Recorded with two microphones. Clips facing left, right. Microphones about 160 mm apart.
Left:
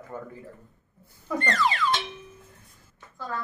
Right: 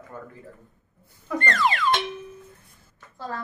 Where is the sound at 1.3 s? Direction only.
60° right (ahead or behind).